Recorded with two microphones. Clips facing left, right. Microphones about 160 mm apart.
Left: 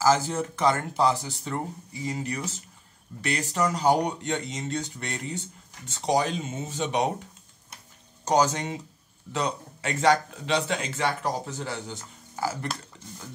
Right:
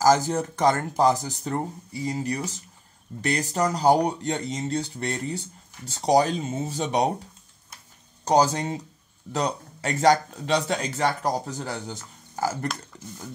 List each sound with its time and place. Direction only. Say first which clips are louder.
0.0 s speech: right 3 dB; 40° right (ahead or behind)
8.3 s speech: right 2 dB; 35° right (ahead or behind)
12.9 s cutlery: right 5 dB; 40° right (ahead or behind)